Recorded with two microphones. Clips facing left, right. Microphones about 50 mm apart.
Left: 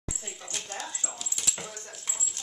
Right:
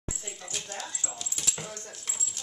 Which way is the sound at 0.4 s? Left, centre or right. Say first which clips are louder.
Left 2 dB; centre.